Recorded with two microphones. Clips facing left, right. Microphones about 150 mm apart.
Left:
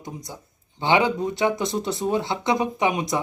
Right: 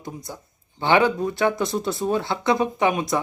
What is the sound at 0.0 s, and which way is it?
Speech, 20° left (ahead or behind).